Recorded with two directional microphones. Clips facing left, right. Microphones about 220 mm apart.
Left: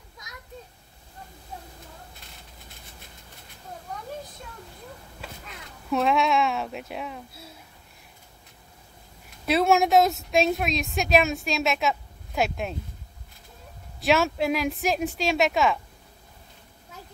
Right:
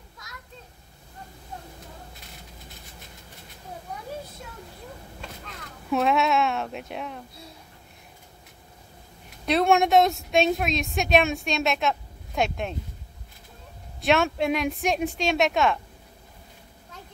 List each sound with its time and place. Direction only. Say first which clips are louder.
0.2 s children playing: even; 15° left (ahead or behind)
5.2 s speech: left 1 dB; centre (ahead or behind)
9.5 s a woman's voice: even; centre (ahead or behind)
14.0 s a woman's voice: even; centre (ahead or behind)